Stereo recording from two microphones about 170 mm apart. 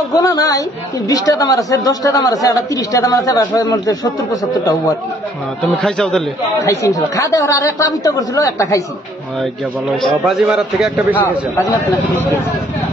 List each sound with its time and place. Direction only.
0.1 s a woman's voice: 20° left (ahead or behind)
5.8 s a man's voice: 5° left (ahead or behind)
6.6 s a woman's voice: 15° left (ahead or behind)
10.0 s a man's voice: centre (ahead or behind)